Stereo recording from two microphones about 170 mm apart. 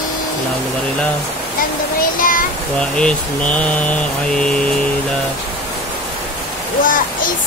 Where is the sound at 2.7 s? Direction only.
5° left (ahead or behind).